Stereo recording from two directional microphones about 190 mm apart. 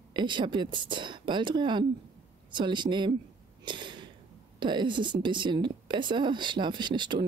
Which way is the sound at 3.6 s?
25° right (ahead or behind).